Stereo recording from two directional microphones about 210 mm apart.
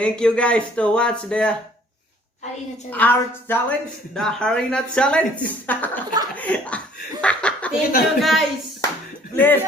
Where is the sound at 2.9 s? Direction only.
10° left (ahead or behind).